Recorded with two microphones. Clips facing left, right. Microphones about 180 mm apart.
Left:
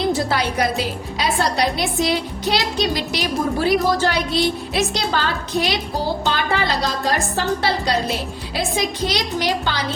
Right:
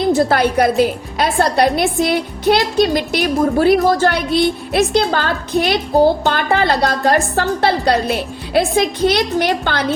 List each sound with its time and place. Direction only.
0.1 s a woman's voice: 50° right (ahead or behind)